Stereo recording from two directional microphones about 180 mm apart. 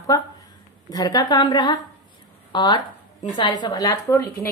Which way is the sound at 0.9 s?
20° left (ahead or behind).